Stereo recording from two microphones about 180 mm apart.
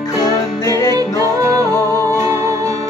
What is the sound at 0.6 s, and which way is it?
Music, 20° left (ahead or behind).